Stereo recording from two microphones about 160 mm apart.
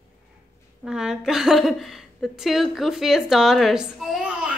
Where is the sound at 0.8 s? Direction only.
5° right (ahead or behind).